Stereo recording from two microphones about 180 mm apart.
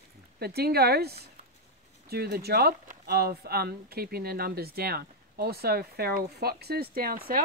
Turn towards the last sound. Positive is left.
turn(degrees=-55)  # may be behind; listen again after turning